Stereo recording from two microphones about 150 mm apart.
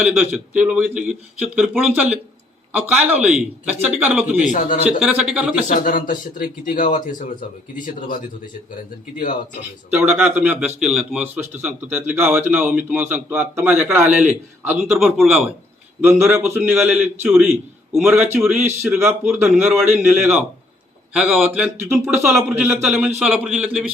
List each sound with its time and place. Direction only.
0.0 s a man's voice: 5° right (ahead or behind)
5.6 s a man's voice: 60° left (ahead or behind)
9.9 s a man's voice: 10° right (ahead or behind)
16.0 s a man's voice: 15° right (ahead or behind)